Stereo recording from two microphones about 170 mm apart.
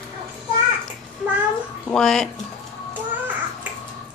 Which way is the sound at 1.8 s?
5° left (ahead or behind).